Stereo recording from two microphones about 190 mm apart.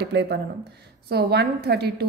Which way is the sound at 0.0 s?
60° right (ahead or behind).